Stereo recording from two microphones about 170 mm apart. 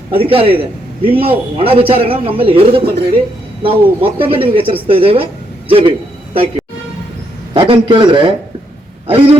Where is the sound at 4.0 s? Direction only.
30° right (ahead or behind).